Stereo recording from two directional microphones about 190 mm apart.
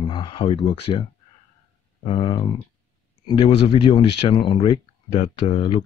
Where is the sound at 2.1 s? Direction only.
25° left (ahead or behind).